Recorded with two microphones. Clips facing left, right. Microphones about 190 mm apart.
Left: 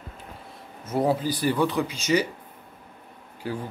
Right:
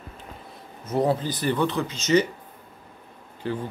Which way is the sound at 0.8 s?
10° left (ahead or behind).